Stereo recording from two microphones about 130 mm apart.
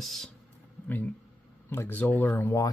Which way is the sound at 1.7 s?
15° left (ahead or behind).